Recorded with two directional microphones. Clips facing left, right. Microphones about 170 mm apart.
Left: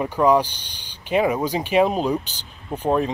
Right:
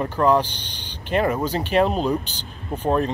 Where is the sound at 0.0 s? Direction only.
10° left (ahead or behind).